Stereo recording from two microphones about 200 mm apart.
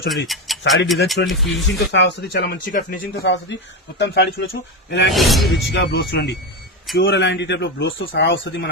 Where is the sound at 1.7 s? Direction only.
60° left (ahead or behind).